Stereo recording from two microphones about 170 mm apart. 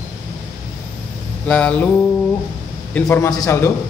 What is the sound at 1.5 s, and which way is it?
Speech, 10° left (ahead or behind).